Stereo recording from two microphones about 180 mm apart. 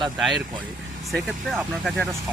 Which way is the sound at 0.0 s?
Centre (ahead or behind).